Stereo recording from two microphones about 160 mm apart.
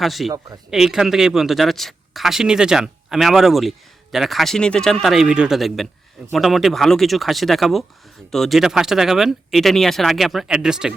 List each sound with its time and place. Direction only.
0.0 s speech: centre (ahead or behind)